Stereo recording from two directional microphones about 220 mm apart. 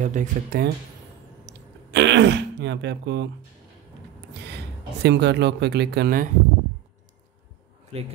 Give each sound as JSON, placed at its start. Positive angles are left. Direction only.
{"t": 0.0, "sound": "speech", "side_deg": -35}
{"t": 1.4, "sound": "throat clearing", "side_deg": -50}
{"t": 5.0, "sound": "speech", "side_deg": -50}